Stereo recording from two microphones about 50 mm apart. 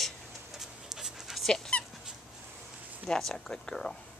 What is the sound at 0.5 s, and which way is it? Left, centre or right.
Dog, centre.